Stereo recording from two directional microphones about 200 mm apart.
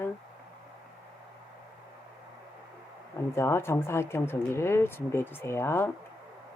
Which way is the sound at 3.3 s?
15° left (ahead or behind).